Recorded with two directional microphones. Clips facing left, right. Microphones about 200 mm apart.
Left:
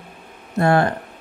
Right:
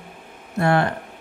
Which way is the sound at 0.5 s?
40° left (ahead or behind).